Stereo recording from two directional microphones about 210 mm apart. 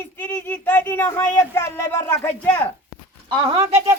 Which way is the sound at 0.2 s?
10° left (ahead or behind).